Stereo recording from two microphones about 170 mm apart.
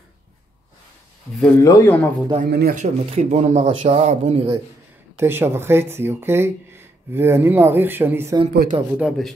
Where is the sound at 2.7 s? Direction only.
45° right (ahead or behind).